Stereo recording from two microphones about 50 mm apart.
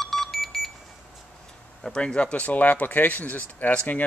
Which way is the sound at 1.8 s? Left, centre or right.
Centre.